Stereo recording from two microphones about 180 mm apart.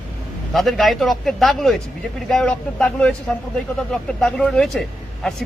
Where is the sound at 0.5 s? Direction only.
Centre (ahead or behind).